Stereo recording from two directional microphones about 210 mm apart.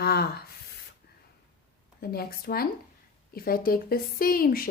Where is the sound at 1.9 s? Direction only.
45° left (ahead or behind).